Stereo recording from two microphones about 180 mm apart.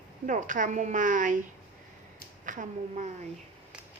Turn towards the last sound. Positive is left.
turn(degrees=-45)  # may be behind; listen again after turning